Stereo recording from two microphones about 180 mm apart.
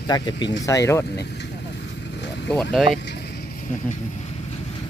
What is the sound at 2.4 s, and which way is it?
Speech, 5° left (ahead or behind).